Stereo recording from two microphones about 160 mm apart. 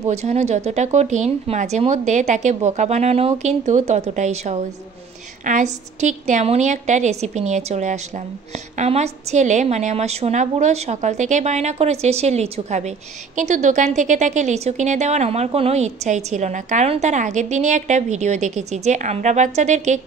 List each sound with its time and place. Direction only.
0.1 s a woman's voice: 45° right (ahead or behind)